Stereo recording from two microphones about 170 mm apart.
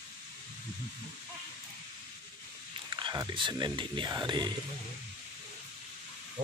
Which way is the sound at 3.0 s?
30° right (ahead or behind).